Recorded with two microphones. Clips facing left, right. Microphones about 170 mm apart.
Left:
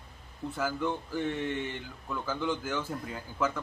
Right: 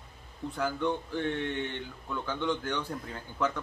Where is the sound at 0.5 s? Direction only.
5° left (ahead or behind).